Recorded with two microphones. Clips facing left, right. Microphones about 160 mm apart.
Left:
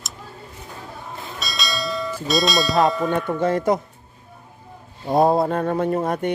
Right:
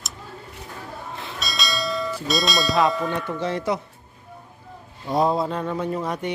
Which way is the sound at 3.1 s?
50° left (ahead or behind).